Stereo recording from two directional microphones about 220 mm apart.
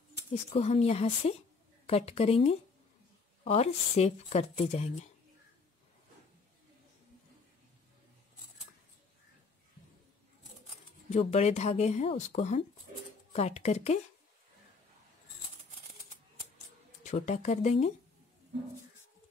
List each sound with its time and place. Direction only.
0.5 s speech: 30° left (ahead or behind)
11.1 s speech: 30° left (ahead or behind)
17.0 s speech: 30° left (ahead or behind)